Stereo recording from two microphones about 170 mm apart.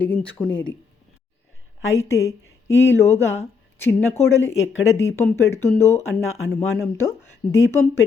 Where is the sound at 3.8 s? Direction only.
15° left (ahead or behind).